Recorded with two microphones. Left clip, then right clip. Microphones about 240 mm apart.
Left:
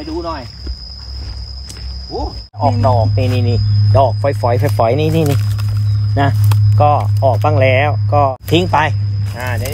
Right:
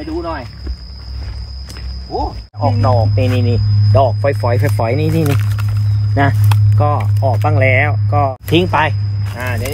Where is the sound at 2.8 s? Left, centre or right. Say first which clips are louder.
Left 1 dB; left.